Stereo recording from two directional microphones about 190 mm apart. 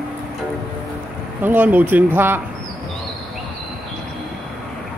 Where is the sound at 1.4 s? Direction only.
10° right (ahead or behind).